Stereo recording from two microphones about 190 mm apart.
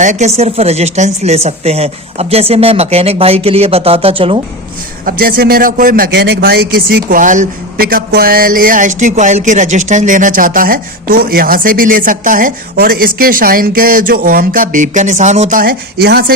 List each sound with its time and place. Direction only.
0.0 s a woman's voice: 40° right (ahead or behind)
5.0 s speech: 50° right (ahead or behind)